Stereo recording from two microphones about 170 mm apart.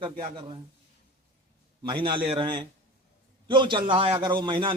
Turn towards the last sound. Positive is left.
turn(degrees=-30)  # may be behind; listen again after turning